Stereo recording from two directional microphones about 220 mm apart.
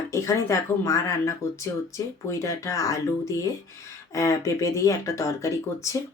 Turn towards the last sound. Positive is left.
turn(degrees=15)  # may be behind; listen again after turning